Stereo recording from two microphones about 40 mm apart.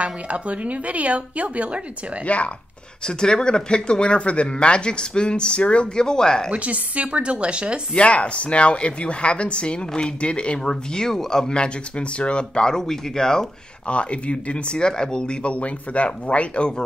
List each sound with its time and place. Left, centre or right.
0.0 s a woman's voice: right
2.2 s speech: left
3.1 s speech: centre
6.0 s speech: centre
6.5 s a woman's voice: right
7.9 s speech: left; by 13.5 s centre
13.8 s speech: left